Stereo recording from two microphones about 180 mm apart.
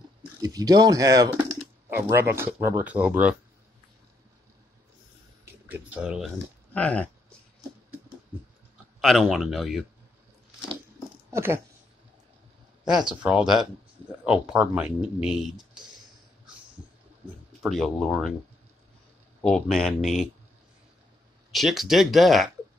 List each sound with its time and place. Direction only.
0.4 s speech: 20° right (ahead or behind)
5.4 s speech: 10° right (ahead or behind)
6.7 s speech: 5° left (ahead or behind)
9.0 s speech: centre (ahead or behind)
11.2 s speech: 15° right (ahead or behind)
12.8 s speech: 5° right (ahead or behind)
17.5 s speech: centre (ahead or behind)
19.4 s speech: centre (ahead or behind)
21.5 s speech: centre (ahead or behind)